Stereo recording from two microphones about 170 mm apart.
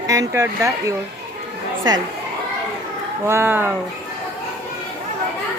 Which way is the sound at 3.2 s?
15° right (ahead or behind).